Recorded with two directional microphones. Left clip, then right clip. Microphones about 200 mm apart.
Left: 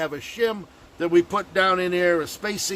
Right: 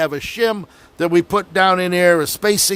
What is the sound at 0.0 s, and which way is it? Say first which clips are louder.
A man's voice: right 6 dB; 45° right (ahead or behind).